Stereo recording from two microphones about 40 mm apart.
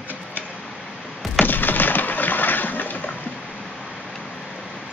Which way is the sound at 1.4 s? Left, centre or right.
Left.